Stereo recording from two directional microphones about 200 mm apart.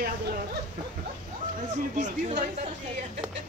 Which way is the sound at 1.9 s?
35° right (ahead or behind).